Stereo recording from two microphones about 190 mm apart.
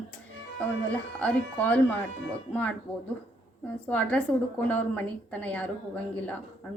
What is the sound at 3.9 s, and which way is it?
Speech, 10° left (ahead or behind).